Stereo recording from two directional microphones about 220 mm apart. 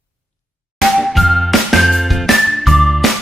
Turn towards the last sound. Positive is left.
turn(degrees=0)  # may be behind; listen again after turning